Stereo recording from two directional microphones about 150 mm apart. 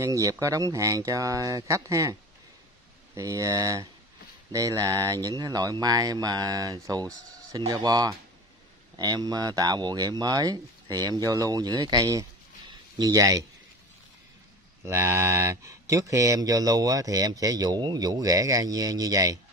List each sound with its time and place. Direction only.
0.0 s speech: 20° right (ahead or behind)
3.2 s speech: 20° right (ahead or behind)
14.9 s speech: 20° right (ahead or behind)